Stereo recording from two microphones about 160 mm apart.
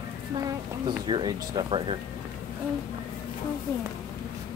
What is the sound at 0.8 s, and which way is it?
Speech, 30° right (ahead or behind).